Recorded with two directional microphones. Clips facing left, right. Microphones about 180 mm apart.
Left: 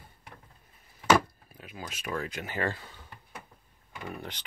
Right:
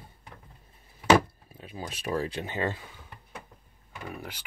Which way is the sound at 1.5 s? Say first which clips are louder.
Right 3 dB; 30° right (ahead or behind).